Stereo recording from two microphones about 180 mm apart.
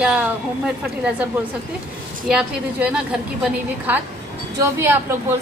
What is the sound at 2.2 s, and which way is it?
Speech, 5° right (ahead or behind).